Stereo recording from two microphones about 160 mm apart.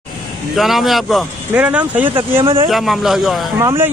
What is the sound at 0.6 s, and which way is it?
A man's voice, centre (ahead or behind).